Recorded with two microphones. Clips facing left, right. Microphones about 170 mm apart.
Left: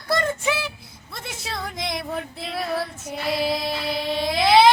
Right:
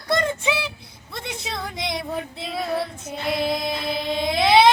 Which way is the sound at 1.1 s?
5° left (ahead or behind).